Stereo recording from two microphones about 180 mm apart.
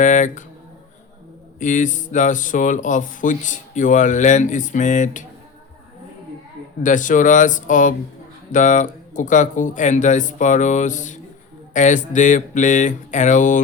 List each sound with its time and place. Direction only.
0.0 s speech: 45° left (ahead or behind)
1.5 s speech: 45° left (ahead or behind)
6.8 s speech: 45° left (ahead or behind)